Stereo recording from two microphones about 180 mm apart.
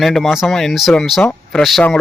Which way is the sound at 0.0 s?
Centre (ahead or behind).